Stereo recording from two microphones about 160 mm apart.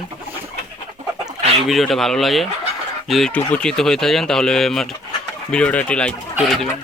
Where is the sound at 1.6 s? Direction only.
Centre (ahead or behind).